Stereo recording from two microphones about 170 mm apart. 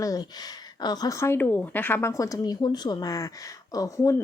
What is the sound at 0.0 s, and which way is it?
A woman's voice, 20° left (ahead or behind).